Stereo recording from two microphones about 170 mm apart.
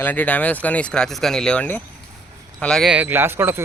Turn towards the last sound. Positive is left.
turn(degrees=-15)  # may be behind; listen again after turning